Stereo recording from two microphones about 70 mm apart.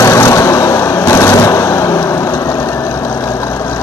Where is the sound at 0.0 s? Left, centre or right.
Left.